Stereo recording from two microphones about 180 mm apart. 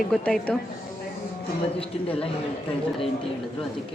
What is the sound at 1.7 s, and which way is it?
Speech, 30° left (ahead or behind).